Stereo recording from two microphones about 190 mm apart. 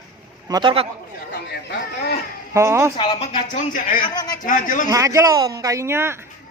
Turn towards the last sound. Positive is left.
turn(degrees=-15)  # may be behind; listen again after turning